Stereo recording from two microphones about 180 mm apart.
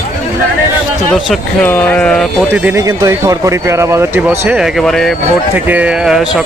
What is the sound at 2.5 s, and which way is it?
Speech, 10° right (ahead or behind).